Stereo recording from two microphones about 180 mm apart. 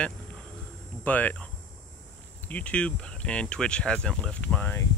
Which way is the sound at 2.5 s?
5° left (ahead or behind).